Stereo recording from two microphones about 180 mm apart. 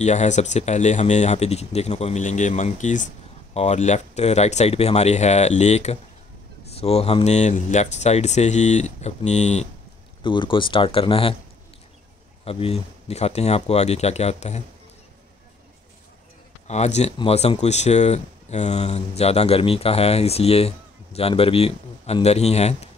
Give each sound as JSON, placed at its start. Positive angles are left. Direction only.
{"t": 0.0, "sound": "speech", "side_deg": 40}
{"t": 10.2, "sound": "speech", "side_deg": 25}
{"t": 12.4, "sound": "speech", "side_deg": 35}
{"t": 16.6, "sound": "speech", "side_deg": 40}